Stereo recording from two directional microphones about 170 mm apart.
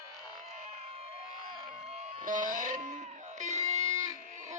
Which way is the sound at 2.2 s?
50° right (ahead or behind).